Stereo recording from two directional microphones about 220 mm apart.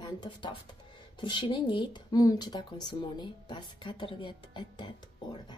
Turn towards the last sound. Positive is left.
turn(degrees=20)  # may be behind; listen again after turning